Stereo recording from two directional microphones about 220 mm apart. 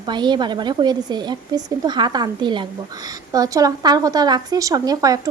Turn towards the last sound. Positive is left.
turn(degrees=-15)  # may be behind; listen again after turning